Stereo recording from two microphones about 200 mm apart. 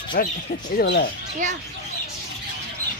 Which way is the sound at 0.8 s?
60° left (ahead or behind).